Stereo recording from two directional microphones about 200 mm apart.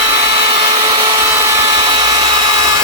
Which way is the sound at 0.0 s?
30° right (ahead or behind).